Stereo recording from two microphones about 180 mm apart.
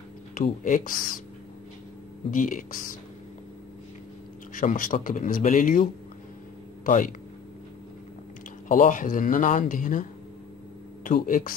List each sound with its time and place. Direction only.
0.3 s speech: 45° left (ahead or behind)
2.3 s speech: 50° left (ahead or behind)
4.6 s speech: 45° left (ahead or behind)
8.6 s speech: 50° left (ahead or behind)
11.1 s speech: 50° left (ahead or behind)